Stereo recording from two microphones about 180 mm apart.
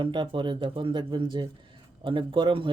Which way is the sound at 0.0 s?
25° right (ahead or behind).